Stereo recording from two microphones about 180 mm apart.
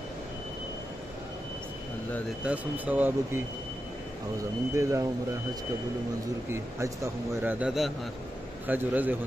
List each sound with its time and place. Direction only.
2.4 s speech: 10° right (ahead or behind)
4.7 s speech: 15° right (ahead or behind)
6.5 s speech: 15° right (ahead or behind)